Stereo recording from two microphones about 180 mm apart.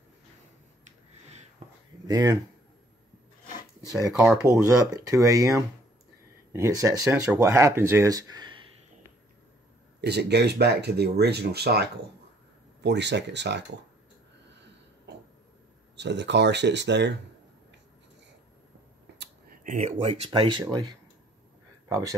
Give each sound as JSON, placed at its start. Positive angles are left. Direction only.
{"t": 1.6, "sound": "a sound", "side_deg": -35}
{"t": 2.0, "sound": "speech", "side_deg": -20}
{"t": 4.2, "sound": "speech", "side_deg": -15}
{"t": 9.9, "sound": "speech", "side_deg": -65}
{"t": 14.5, "sound": "a sound", "side_deg": -75}
{"t": 16.0, "sound": "speech", "side_deg": -75}
{"t": 19.6, "sound": "speech", "side_deg": -45}